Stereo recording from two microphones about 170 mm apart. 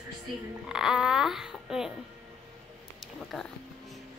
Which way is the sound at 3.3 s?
Centre (ahead or behind).